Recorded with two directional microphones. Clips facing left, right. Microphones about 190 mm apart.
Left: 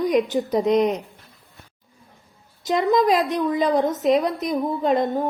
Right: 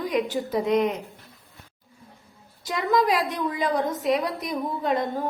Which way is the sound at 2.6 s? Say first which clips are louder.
Left 4 dB; 20° left (ahead or behind).